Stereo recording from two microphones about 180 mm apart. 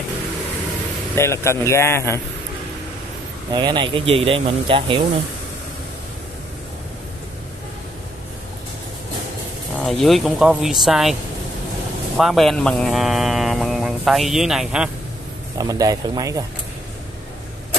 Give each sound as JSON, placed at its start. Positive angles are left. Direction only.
{"t": 1.1, "sound": "speech", "side_deg": 15}
{"t": 3.5, "sound": "speech", "side_deg": -25}
{"t": 9.8, "sound": "speech", "side_deg": 0}
{"t": 12.2, "sound": "speech", "side_deg": 0}
{"t": 15.5, "sound": "speech", "side_deg": -20}